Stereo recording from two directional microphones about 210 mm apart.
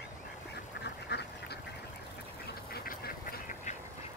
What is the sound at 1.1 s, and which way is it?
Duck, 55° left (ahead or behind).